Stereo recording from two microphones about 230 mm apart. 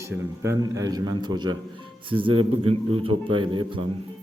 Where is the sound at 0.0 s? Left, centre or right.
Centre.